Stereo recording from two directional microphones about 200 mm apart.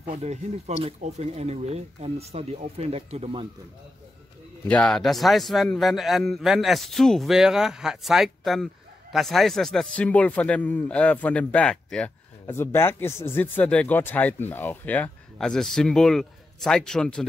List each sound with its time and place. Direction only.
0.0 s speech: 35° right (ahead or behind)
4.6 s a man's voice: 5° left (ahead or behind)